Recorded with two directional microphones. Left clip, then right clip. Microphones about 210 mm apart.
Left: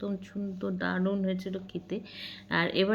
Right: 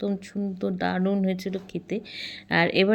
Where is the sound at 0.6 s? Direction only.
20° right (ahead or behind).